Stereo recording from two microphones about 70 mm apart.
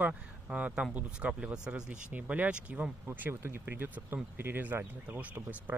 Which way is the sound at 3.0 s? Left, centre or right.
Right.